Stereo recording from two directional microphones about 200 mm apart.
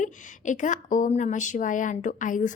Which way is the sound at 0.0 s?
40° left (ahead or behind).